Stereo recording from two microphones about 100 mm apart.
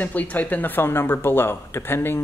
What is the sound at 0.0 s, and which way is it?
Speech, 15° left (ahead or behind).